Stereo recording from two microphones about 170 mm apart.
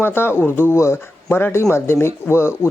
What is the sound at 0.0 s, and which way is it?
Speech, 15° left (ahead or behind).